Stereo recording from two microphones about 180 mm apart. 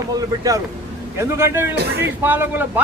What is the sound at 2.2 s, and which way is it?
Speech, 10° right (ahead or behind).